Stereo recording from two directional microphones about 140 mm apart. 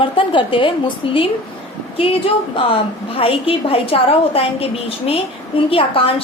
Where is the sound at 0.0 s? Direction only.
35° left (ahead or behind).